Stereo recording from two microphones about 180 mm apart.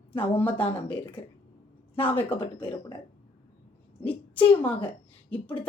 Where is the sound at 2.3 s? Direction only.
25° left (ahead or behind).